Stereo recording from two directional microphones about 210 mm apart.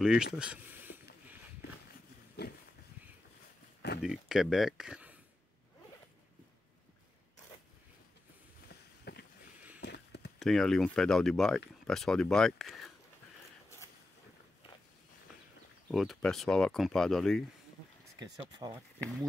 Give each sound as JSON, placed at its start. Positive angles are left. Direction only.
{"t": 0.0, "sound": "speech", "side_deg": -5}
{"t": 2.4, "sound": "a sound", "side_deg": 50}
{"t": 4.0, "sound": "speech", "side_deg": 0}
{"t": 9.1, "sound": "boat", "side_deg": 50}
{"t": 9.8, "sound": "a sound", "side_deg": 55}
{"t": 10.4, "sound": "speech", "side_deg": 0}
{"t": 15.9, "sound": "speech", "side_deg": 0}
{"t": 18.2, "sound": "speech", "side_deg": -20}